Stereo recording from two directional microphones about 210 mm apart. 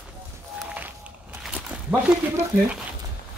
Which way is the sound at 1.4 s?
5° right (ahead or behind).